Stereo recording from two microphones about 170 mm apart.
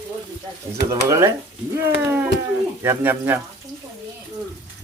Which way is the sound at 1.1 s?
15° right (ahead or behind).